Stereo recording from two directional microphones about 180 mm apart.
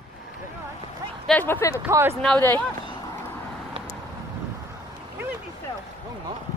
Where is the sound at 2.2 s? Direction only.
10° left (ahead or behind).